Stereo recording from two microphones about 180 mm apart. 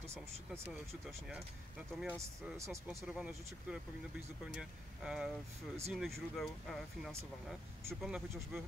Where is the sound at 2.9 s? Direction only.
5° right (ahead or behind).